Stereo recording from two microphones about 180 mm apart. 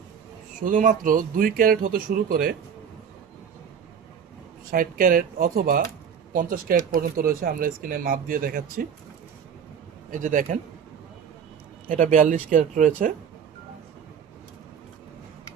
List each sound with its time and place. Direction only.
0.6 s speech: 45° right (ahead or behind)
4.7 s speech: 50° right (ahead or behind)
10.1 s speech: 45° right (ahead or behind)
11.9 s speech: 45° right (ahead or behind)